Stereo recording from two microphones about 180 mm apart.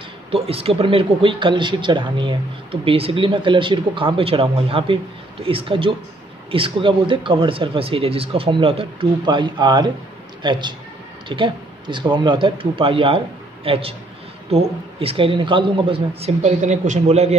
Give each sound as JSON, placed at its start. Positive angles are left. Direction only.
{"t": 0.3, "sound": "speech", "side_deg": -30}